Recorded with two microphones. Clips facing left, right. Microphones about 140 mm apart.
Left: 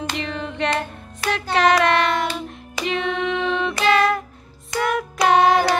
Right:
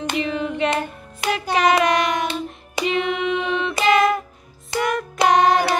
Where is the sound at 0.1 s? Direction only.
5° right (ahead or behind).